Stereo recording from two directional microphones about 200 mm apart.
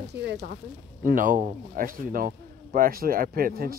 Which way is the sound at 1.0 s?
40° right (ahead or behind).